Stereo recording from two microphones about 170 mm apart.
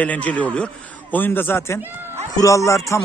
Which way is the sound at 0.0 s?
10° left (ahead or behind).